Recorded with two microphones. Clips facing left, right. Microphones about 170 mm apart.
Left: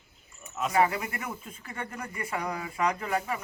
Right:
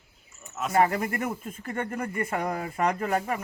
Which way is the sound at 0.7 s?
45° right (ahead or behind).